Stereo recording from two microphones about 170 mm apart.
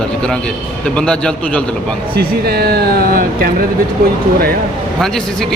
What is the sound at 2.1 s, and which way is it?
Speech, 65° right (ahead or behind).